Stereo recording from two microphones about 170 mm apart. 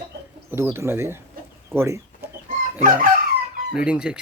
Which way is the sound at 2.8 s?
50° right (ahead or behind).